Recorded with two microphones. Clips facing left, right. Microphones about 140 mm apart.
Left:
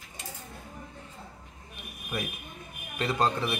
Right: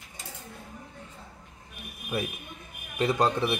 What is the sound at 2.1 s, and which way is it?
A man's voice, 10° right (ahead or behind).